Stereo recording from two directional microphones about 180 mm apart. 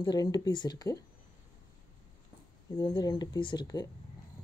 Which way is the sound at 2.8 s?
25° left (ahead or behind).